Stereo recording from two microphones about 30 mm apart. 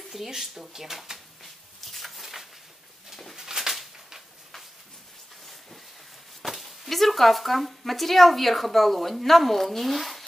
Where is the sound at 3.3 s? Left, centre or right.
Centre.